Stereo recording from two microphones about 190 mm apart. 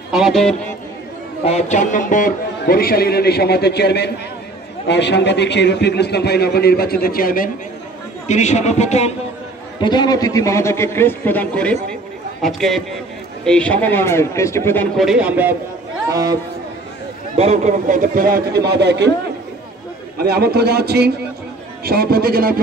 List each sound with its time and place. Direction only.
0.1 s a man's voice: centre (ahead or behind)
1.4 s speech: 35° left (ahead or behind)
8.3 s a man's voice: 40° left (ahead or behind)
9.8 s a man's voice: 20° left (ahead or behind)
15.0 s a man's voice: 5° right (ahead or behind)
16.1 s a man's voice: 20° right (ahead or behind)
17.4 s a man's voice: 35° right (ahead or behind); by 19.0 s 65° right (ahead or behind)
20.2 s a man's voice: 55° right (ahead or behind)